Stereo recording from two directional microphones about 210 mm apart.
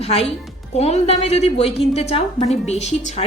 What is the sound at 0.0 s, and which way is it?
A woman's voice, 30° left (ahead or behind).